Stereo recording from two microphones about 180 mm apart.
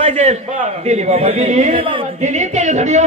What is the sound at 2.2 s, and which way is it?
Speech, 40° right (ahead or behind).